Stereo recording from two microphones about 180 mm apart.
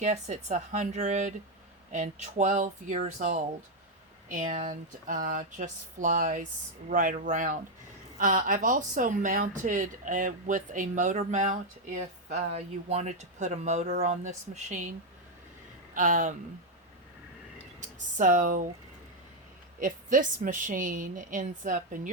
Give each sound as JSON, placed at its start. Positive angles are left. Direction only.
{"t": 0.0, "sound": "a woman's voice", "side_deg": -40}
{"t": 16.0, "sound": "a woman's voice", "side_deg": -45}
{"t": 17.7, "sound": "a woman's voice", "side_deg": -45}
{"t": 19.8, "sound": "a woman's voice", "side_deg": -50}